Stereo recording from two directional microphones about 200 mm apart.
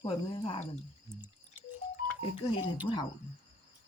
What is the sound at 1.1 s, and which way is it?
Speech, 15° right (ahead or behind).